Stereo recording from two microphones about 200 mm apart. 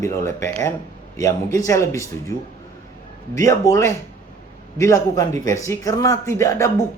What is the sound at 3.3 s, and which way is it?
Speech, 15° left (ahead or behind).